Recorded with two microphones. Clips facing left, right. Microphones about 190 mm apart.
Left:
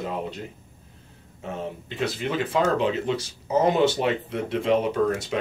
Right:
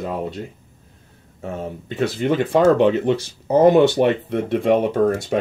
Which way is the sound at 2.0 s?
50° right (ahead or behind).